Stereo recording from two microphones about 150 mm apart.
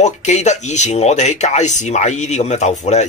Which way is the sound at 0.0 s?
50° left (ahead or behind).